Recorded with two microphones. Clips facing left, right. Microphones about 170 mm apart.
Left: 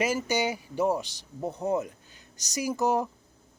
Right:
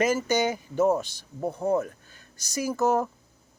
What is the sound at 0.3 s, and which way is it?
Speech, 10° left (ahead or behind).